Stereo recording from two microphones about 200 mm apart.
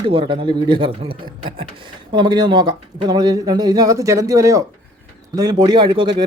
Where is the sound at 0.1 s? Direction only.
25° right (ahead or behind).